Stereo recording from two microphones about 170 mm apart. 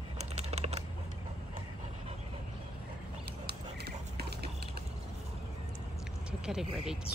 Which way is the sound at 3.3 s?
70° right (ahead or behind).